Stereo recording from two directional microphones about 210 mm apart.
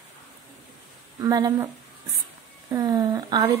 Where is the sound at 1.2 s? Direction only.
15° right (ahead or behind).